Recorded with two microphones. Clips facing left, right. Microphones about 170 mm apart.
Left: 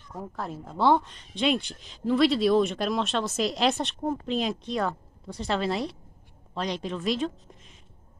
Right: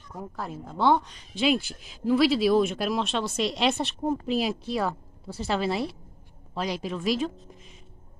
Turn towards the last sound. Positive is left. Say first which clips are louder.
# right 1 dB
turn(degrees=-5)  # may be behind; listen again after turning